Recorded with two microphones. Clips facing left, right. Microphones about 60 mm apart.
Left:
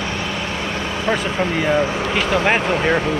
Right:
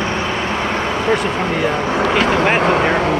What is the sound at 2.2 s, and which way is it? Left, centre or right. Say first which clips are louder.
Speech: right 1 dB; right.